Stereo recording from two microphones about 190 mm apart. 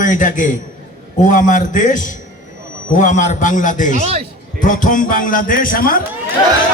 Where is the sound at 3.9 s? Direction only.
35° right (ahead or behind).